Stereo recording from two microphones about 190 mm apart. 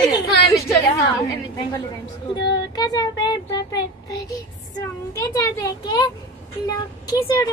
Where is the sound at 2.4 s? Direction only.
20° left (ahead or behind).